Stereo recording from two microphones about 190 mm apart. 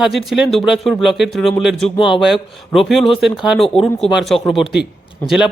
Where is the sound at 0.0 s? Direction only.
Centre (ahead or behind).